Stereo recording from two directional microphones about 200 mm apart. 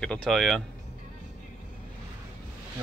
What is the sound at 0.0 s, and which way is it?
Speech, 5° left (ahead or behind).